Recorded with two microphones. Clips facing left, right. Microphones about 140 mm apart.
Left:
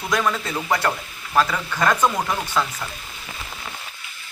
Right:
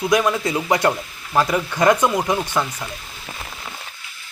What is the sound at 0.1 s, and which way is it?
Speech, 15° right (ahead or behind).